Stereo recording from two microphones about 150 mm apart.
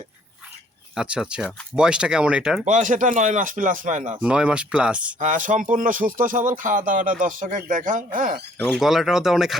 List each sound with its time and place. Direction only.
0.9 s speech: 5° right (ahead or behind)
2.6 s a man's voice: 60° right (ahead or behind)
4.2 s speech: 5° right (ahead or behind)
5.2 s a man's voice: 60° right (ahead or behind)
8.7 s speech: centre (ahead or behind)